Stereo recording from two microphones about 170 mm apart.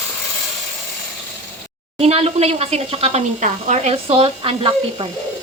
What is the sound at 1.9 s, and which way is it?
A woman's voice, 35° right (ahead or behind).